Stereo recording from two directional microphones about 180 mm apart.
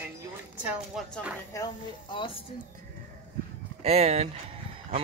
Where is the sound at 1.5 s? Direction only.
20° left (ahead or behind).